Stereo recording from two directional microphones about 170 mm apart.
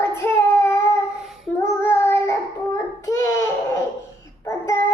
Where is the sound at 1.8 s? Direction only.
10° left (ahead or behind).